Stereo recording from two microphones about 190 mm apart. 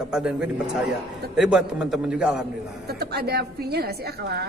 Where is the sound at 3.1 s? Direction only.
55° right (ahead or behind).